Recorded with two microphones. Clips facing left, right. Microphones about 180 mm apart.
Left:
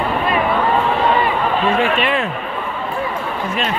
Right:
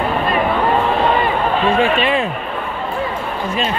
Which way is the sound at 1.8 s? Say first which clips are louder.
Right 2 dB; 30° right (ahead or behind).